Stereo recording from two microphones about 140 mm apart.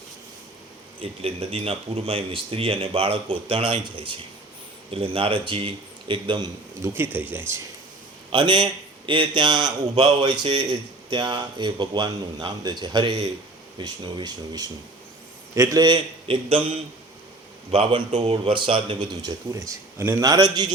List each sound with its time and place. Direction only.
1.0 s speech: 45° right (ahead or behind)
6.8 s speech: 15° right (ahead or behind)
8.3 s speech: 35° right (ahead or behind)
17.7 s speech: 45° right (ahead or behind)